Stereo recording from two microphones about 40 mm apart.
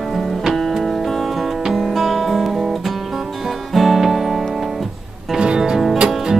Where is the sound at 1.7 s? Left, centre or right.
Centre.